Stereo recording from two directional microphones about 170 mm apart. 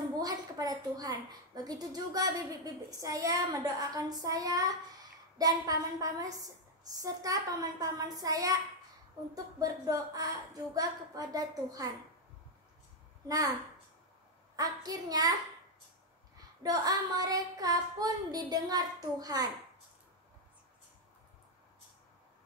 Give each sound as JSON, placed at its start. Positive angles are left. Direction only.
{"t": 0.2, "sound": "a woman's voice", "side_deg": -20}
{"t": 13.3, "sound": "a woman's voice", "side_deg": -20}
{"t": 16.6, "sound": "a woman's voice", "side_deg": -20}